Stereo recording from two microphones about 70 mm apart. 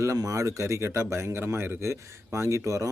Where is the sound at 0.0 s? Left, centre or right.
Right.